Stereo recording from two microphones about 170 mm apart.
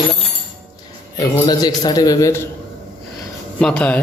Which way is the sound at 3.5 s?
5° left (ahead or behind).